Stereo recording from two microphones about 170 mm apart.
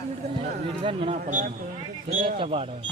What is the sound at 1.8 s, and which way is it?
Speech, 30° right (ahead or behind).